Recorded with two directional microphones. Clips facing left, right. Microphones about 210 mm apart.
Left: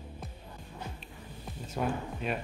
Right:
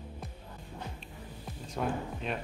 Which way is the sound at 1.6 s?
5° left (ahead or behind).